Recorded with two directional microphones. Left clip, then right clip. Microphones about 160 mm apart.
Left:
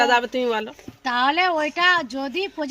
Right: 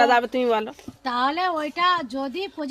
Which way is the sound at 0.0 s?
50° right (ahead or behind).